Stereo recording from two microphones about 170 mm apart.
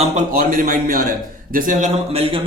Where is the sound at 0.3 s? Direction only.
55° right (ahead or behind).